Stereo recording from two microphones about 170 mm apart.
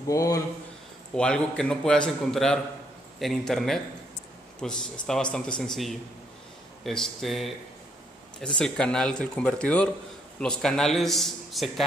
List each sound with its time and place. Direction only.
0.1 s speech: 20° left (ahead or behind)
1.1 s a man's voice: 5° left (ahead or behind)
8.5 s a man's voice: 5° left (ahead or behind)